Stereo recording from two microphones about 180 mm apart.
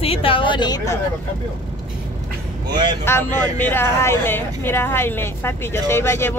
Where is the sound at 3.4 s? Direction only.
10° left (ahead or behind).